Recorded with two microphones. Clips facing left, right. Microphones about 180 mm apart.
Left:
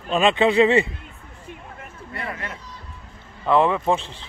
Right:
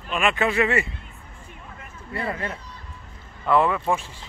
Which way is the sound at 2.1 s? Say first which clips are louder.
Right 4 dB; 30° right (ahead or behind).